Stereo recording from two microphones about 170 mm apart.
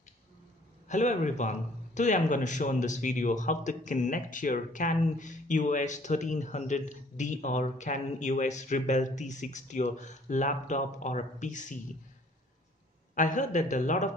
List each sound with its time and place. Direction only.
0.8 s speech: 45° left (ahead or behind)
13.1 s speech: 50° left (ahead or behind)